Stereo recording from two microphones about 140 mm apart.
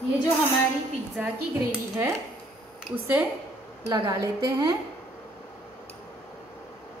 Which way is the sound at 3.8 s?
25° right (ahead or behind).